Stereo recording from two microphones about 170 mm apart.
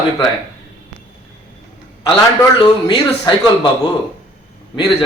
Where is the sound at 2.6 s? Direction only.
25° left (ahead or behind).